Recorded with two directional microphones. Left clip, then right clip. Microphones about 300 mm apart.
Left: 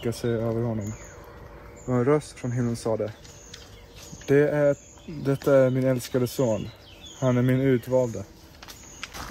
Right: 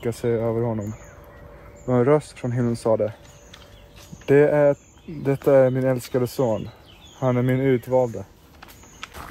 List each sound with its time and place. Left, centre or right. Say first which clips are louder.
0.0 s speech: right 4 dB; centre
1.9 s speech: right 4 dB; right
4.3 s speech: right 4 dB; centre